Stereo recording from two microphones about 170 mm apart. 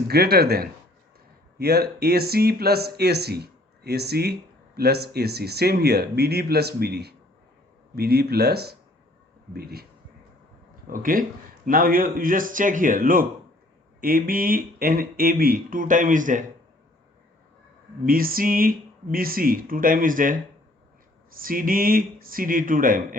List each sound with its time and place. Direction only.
0.1 s speech: 65° right (ahead or behind)
10.8 s speech: 55° right (ahead or behind)
18.0 s speech: 60° right (ahead or behind)
21.3 s speech: 55° right (ahead or behind)